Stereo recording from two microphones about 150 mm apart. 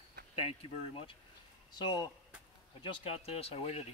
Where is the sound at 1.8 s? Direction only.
30° left (ahead or behind).